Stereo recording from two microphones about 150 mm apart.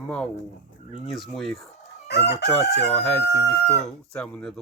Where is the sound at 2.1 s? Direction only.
90° left.